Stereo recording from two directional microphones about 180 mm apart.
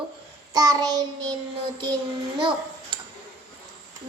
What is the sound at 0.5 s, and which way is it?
Child singing, 20° right (ahead or behind).